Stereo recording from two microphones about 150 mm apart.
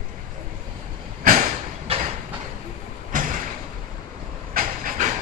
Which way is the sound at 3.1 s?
65° right (ahead or behind).